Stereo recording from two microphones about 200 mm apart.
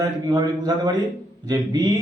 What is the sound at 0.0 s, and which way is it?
A man's voice, 20° right (ahead or behind).